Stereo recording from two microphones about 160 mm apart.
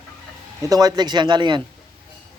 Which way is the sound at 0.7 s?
25° right (ahead or behind).